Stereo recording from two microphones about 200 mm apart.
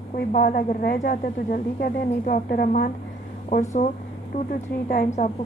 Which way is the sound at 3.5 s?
35° left (ahead or behind).